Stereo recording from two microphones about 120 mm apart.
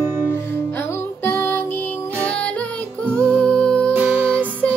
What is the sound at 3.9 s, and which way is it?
Music, 10° right (ahead or behind).